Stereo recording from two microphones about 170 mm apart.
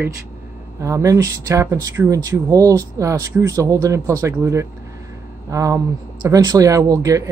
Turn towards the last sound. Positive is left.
turn(degrees=-20)  # may be behind; listen again after turning